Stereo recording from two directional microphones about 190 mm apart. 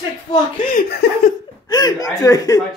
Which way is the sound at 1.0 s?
60° left (ahead or behind).